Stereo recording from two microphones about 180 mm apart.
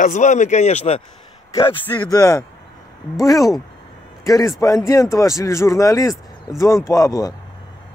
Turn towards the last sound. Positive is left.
turn(degrees=20)  # may be behind; listen again after turning